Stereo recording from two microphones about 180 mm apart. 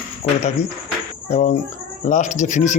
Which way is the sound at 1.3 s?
40° left (ahead or behind).